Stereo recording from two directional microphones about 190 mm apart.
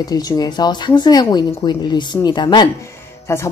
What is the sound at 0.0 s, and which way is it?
A woman's voice, 20° left (ahead or behind).